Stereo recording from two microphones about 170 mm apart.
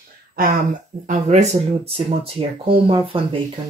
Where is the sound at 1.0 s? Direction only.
45° right (ahead or behind).